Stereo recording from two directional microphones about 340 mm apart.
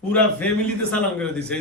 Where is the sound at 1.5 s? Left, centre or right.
Centre.